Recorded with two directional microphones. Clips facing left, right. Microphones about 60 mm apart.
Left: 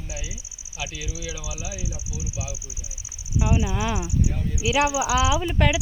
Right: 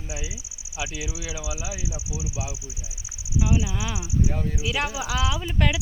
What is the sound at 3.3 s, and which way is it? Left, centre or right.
Speech, left.